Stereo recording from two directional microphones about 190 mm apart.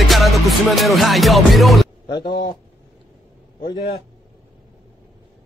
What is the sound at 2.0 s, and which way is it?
Speech, 25° left (ahead or behind).